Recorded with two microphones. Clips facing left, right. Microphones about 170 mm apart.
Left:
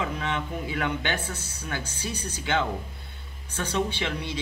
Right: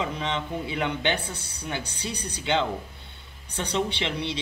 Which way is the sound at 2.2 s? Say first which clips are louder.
Right 2 dB; 20° right (ahead or behind).